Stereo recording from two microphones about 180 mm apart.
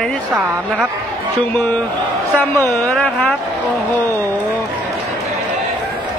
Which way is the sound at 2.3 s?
10° left (ahead or behind).